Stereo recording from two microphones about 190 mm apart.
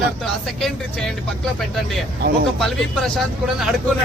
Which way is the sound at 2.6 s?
Centre (ahead or behind).